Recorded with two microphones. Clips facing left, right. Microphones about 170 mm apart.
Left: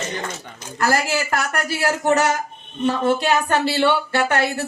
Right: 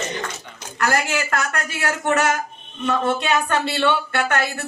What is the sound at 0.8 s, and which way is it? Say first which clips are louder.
Speech: left 1 dB; 30° left (ahead or behind).